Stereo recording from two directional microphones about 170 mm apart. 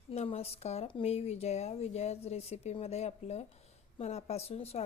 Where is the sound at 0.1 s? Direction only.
35° left (ahead or behind).